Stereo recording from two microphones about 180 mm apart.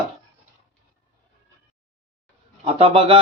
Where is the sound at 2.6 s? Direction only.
30° right (ahead or behind).